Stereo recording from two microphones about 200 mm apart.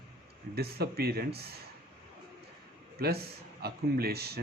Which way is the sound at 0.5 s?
50° right (ahead or behind).